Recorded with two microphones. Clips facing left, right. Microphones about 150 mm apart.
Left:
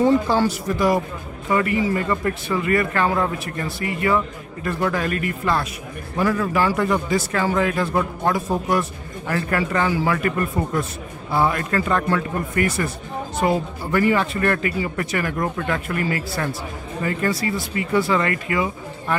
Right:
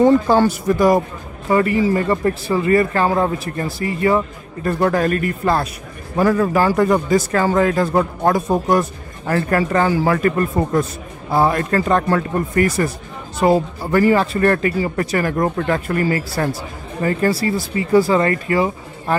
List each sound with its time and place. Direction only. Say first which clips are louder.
0.0 s speech: right 5 dB; 50° right (ahead or behind)
1.5 s a man's voice: right 4 dB; 35° right (ahead or behind)